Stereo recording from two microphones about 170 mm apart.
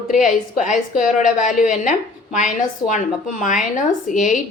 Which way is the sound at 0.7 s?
50° left (ahead or behind).